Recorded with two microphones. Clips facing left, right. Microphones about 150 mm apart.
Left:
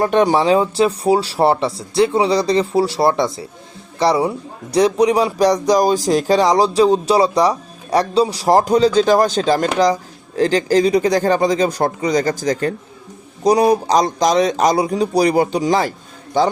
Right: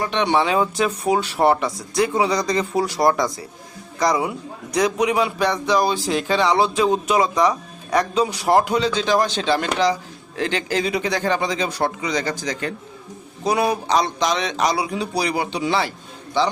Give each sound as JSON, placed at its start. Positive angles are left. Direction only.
{"t": 0.0, "sound": "a man's voice", "side_deg": 45}